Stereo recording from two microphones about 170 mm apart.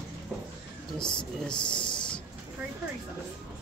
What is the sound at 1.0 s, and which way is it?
Speech, 5° left (ahead or behind).